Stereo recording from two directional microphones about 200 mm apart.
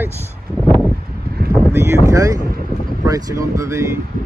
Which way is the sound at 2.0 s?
15° right (ahead or behind).